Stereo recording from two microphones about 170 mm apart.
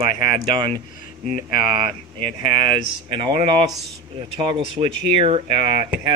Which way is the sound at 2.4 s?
30° right (ahead or behind).